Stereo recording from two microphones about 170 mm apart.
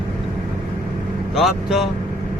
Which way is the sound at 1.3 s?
5° right (ahead or behind).